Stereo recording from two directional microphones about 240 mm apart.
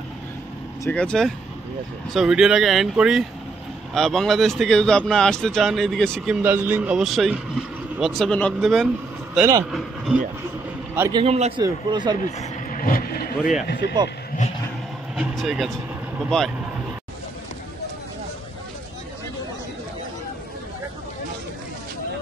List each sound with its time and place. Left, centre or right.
0.8 s speech: centre
11.0 s a man's voice: centre
12.4 s speech: left
13.4 s speech: centre
13.7 s speech: left
15.1 s speech: centre